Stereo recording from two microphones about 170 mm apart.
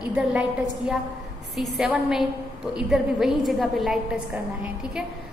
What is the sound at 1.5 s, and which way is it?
A woman's voice, centre (ahead or behind).